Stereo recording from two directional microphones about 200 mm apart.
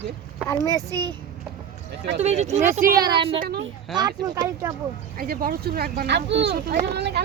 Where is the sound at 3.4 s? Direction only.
50° right (ahead or behind).